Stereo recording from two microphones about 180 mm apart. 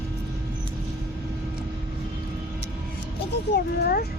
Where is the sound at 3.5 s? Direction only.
55° left (ahead or behind).